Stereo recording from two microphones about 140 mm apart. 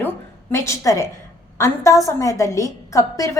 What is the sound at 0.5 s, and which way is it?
A woman's voice, 20° left (ahead or behind).